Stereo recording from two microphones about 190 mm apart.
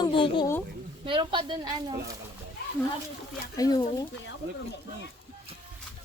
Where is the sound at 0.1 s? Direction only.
25° left (ahead or behind).